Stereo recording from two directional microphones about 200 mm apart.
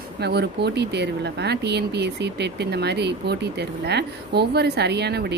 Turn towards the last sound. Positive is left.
turn(degrees=-55)  # may be behind; listen again after turning